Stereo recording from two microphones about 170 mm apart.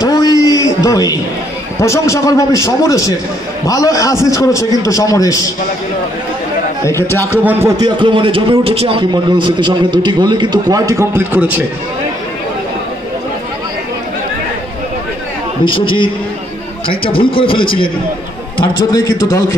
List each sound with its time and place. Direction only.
0.0 s a sound: 20° left (ahead or behind)
0.8 s a man's voice: 20° left (ahead or behind)
6.8 s a man's voice: 15° left (ahead or behind)
7.4 s a man's voice: 15° right (ahead or behind)
15.6 s a man's voice: 30° left (ahead or behind)
18.8 s a man's voice: 20° left (ahead or behind)